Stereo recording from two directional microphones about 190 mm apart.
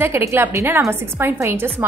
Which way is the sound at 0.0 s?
15° right (ahead or behind).